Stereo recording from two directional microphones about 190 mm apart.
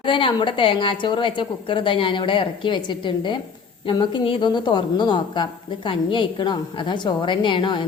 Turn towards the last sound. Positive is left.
turn(degrees=25)  # may be behind; listen again after turning